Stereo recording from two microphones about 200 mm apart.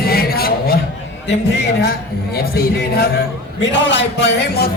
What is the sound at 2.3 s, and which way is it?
Speech, 50° left (ahead or behind).